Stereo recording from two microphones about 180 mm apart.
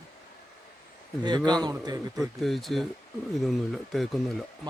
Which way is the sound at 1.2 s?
25° right (ahead or behind).